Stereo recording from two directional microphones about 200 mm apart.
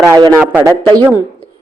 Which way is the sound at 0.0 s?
15° right (ahead or behind).